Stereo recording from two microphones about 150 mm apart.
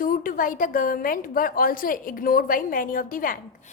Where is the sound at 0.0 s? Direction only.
70° left (ahead or behind).